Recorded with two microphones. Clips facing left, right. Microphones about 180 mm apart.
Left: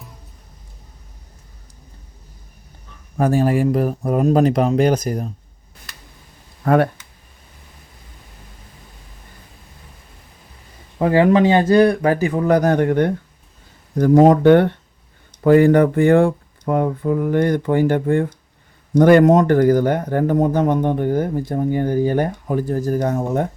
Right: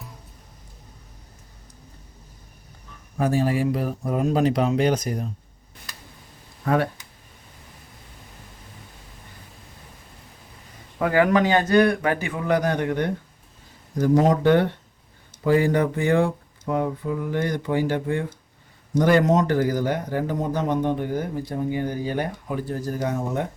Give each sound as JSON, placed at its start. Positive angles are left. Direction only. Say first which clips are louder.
{"t": 3.2, "sound": "speech", "louder": "left 5 dB", "side_deg": 50}
{"t": 11.0, "sound": "speech", "louder": "left 5 dB", "side_deg": 30}